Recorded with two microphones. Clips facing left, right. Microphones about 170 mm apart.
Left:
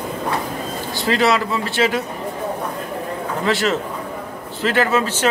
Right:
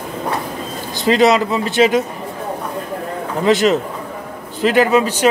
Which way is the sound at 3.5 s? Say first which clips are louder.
Right 7 dB; 20° right (ahead or behind).